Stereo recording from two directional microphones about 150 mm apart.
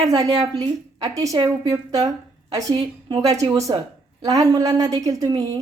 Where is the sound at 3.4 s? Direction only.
20° right (ahead or behind).